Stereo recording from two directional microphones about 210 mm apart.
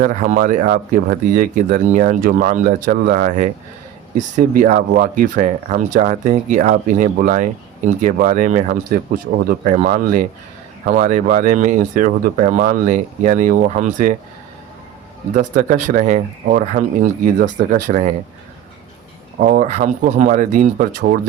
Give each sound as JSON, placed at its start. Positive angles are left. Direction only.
{"t": 0.0, "sound": "speech", "side_deg": -40}
{"t": 15.4, "sound": "speech", "side_deg": -35}
{"t": 19.4, "sound": "speech", "side_deg": -35}